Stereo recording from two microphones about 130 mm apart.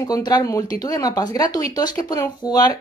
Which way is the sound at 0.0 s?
30° left (ahead or behind).